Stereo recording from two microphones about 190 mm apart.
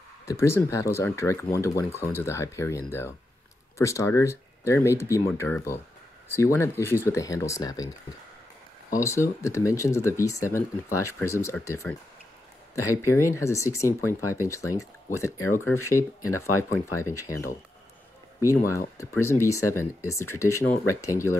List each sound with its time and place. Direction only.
0.3 s speech: 15° left (ahead or behind)
9.0 s speech: 15° left (ahead or behind)
18.9 s speech: 15° left (ahead or behind)